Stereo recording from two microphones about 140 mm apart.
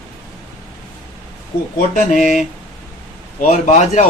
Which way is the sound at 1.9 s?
60° left (ahead or behind).